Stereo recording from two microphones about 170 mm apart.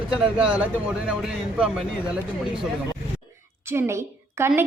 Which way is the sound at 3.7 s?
15° right (ahead or behind).